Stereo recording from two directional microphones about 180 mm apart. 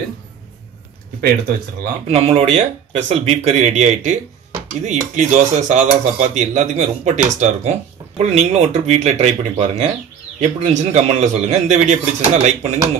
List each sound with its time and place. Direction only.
2.0 s speech: 35° right (ahead or behind)